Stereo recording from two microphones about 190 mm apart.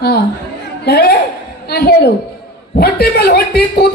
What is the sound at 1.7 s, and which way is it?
A woman's voice, 55° left (ahead or behind).